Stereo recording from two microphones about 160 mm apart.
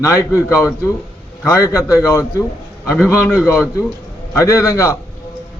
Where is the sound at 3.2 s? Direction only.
15° left (ahead or behind).